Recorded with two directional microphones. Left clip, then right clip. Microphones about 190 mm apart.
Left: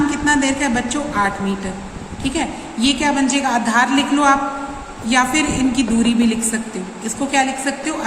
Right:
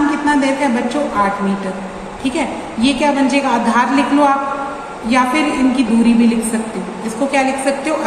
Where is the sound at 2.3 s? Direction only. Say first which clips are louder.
Right 3 dB; 35° left (ahead or behind).